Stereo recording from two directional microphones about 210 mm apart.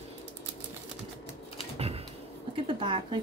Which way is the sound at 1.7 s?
30° right (ahead or behind).